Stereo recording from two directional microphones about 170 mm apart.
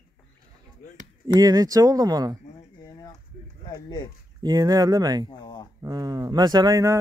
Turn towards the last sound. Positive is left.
turn(degrees=-20)  # may be behind; listen again after turning